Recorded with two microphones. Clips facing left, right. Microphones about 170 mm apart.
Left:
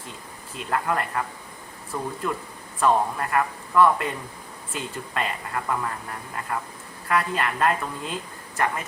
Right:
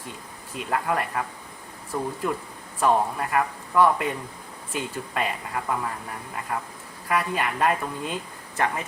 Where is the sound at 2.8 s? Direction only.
10° right (ahead or behind).